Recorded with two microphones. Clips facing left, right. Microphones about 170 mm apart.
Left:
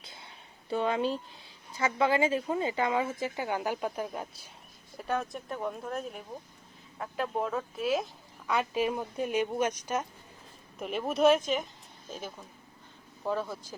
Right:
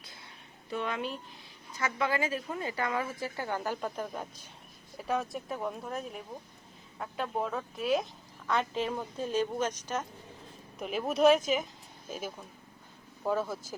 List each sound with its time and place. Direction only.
0.0 s a sound: 25° left (ahead or behind)
0.7 s a woman's voice: 30° left (ahead or behind); by 10.1 s 10° left (ahead or behind)
10.8 s speech: centre (ahead or behind)